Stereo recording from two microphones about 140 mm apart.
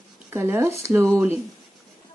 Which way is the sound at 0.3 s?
15° right (ahead or behind).